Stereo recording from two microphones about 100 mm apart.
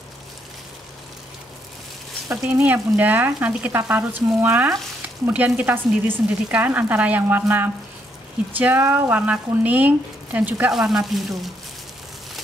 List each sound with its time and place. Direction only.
2.2 s speech: 15° right (ahead or behind)
10.7 s speech: 5° right (ahead or behind)